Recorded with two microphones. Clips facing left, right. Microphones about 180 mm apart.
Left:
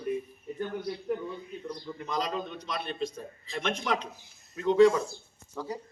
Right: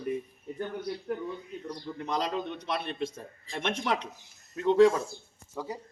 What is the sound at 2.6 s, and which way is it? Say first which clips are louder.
Speech: right 1 dB; 65° right (ahead or behind).